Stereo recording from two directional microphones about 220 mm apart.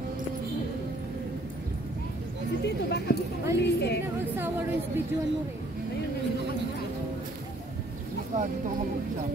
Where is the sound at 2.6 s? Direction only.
50° left (ahead or behind).